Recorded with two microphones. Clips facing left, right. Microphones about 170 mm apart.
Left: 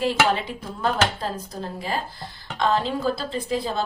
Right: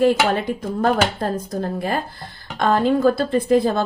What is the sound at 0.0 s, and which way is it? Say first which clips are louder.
A woman's voice: right 5 dB; 50° right (ahead or behind).